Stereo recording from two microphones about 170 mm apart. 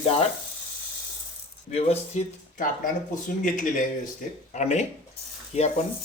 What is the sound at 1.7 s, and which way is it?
Speech, 40° left (ahead or behind).